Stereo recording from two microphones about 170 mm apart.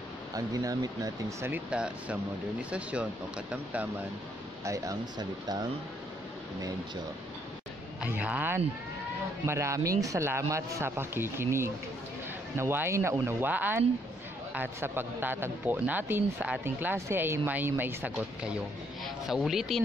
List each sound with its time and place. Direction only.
0.3 s speech: 20° right (ahead or behind)
4.6 s speech: 20° right (ahead or behind)
8.0 s speech: 10° right (ahead or behind)